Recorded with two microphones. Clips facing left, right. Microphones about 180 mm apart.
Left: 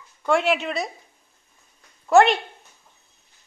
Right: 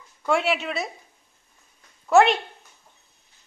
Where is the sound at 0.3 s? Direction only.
Centre (ahead or behind).